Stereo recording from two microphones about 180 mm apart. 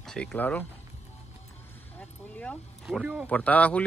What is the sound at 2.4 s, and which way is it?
Speech, 5° left (ahead or behind).